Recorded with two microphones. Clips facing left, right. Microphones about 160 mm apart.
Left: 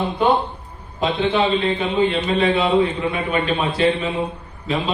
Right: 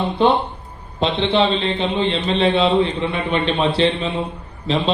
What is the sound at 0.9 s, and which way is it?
A man's voice, 25° right (ahead or behind).